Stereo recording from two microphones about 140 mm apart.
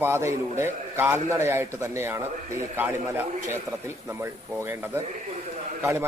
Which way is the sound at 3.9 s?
20° right (ahead or behind).